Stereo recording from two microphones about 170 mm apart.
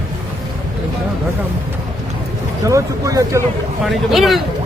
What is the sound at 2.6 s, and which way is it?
Speech, 20° right (ahead or behind).